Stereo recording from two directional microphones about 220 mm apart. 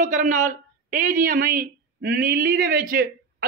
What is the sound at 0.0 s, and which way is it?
Speech, 35° right (ahead or behind).